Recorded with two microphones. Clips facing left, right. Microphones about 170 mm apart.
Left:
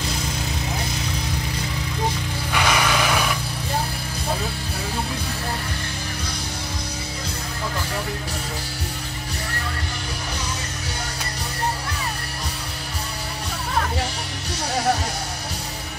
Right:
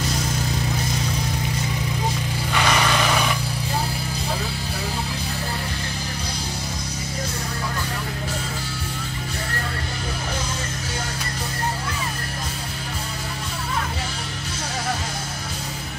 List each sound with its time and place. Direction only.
2.5 s vehicle: 5° left (ahead or behind)